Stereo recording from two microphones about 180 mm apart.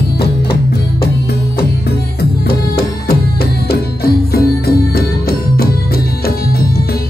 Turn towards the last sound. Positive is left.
turn(degrees=60)  # may be behind; listen again after turning